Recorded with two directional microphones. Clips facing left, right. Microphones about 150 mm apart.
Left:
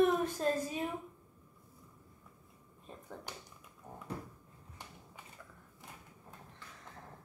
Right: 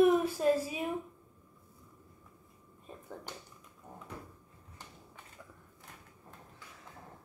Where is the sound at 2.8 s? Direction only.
5° right (ahead or behind).